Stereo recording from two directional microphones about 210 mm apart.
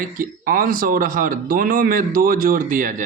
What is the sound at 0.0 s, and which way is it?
Speech, 40° right (ahead or behind).